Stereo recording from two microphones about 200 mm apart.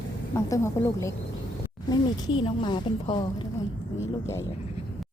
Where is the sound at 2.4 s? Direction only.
25° left (ahead or behind).